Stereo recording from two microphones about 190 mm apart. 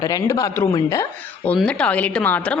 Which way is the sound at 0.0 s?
20° left (ahead or behind).